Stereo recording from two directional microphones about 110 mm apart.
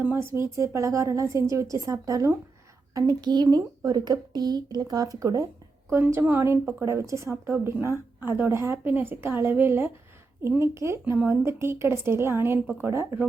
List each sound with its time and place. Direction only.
0.0 s a woman's voice: 20° right (ahead or behind)